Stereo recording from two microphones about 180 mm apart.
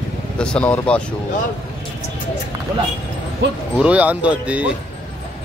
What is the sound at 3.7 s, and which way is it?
Speech, 5° right (ahead or behind).